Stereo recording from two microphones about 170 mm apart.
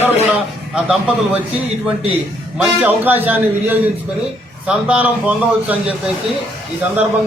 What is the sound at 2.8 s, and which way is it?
A man's voice, 10° right (ahead or behind).